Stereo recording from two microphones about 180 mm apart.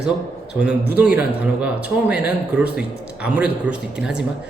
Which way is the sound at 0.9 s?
10° right (ahead or behind).